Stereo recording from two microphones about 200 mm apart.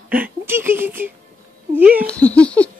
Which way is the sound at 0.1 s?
10° right (ahead or behind).